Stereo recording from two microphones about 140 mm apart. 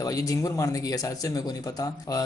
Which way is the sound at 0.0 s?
25° left (ahead or behind).